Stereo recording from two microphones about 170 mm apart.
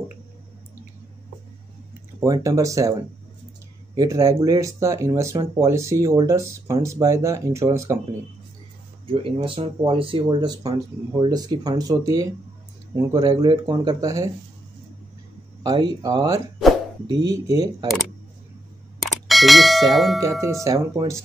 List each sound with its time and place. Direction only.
2.1 s speech: 20° right (ahead or behind)
9.0 s speech: 30° right (ahead or behind)
15.6 s speech: 25° right (ahead or behind)
17.8 s speech: centre (ahead or behind)
19.0 s clang: centre (ahead or behind)
20.2 s speech: 15° right (ahead or behind)